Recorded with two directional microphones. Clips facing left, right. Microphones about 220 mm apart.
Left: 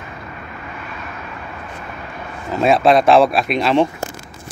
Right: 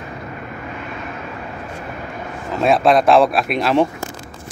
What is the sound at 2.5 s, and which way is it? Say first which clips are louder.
Speech: left 1 dB; centre (ahead or behind).